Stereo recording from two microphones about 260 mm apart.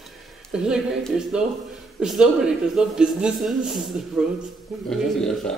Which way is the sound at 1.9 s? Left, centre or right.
Centre.